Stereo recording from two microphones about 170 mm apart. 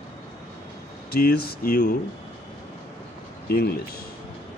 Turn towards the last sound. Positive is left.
turn(degrees=65)  # may be behind; listen again after turning